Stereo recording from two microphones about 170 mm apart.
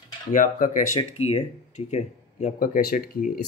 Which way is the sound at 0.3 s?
50° left (ahead or behind).